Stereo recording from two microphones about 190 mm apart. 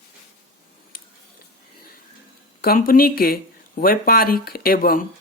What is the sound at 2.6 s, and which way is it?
Speech, 50° left (ahead or behind).